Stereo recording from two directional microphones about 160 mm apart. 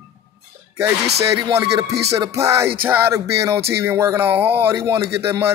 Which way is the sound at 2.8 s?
15° right (ahead or behind).